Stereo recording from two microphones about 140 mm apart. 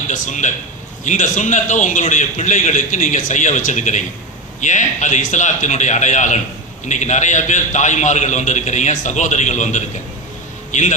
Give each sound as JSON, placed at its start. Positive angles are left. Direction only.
{"t": 0.1, "sound": "a man's voice", "side_deg": 60}